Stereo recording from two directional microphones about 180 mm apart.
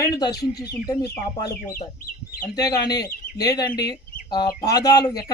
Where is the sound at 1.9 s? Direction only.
55° left (ahead or behind).